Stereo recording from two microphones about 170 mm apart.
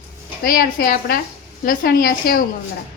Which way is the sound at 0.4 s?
60° left (ahead or behind).